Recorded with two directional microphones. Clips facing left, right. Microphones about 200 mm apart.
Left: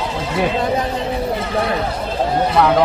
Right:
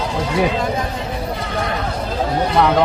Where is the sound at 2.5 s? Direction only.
Centre (ahead or behind).